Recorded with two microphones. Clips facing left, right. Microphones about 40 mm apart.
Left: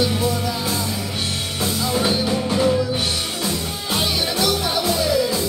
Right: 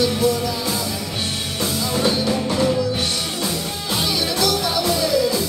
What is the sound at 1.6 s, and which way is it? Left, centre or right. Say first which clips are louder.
Music: even; centre.